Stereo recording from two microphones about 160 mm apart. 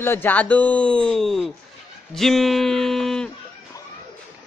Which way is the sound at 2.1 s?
Centre (ahead or behind).